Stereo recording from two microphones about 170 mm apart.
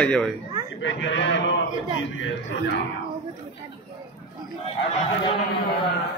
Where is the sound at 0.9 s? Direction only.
90° left.